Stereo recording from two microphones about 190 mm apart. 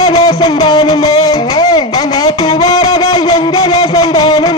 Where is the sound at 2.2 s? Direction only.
20° left (ahead or behind).